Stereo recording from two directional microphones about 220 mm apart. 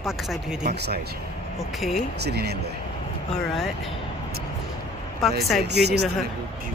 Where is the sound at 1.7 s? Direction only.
Centre (ahead or behind).